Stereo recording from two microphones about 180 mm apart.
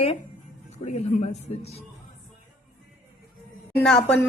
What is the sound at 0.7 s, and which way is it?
Speech, 40° left (ahead or behind).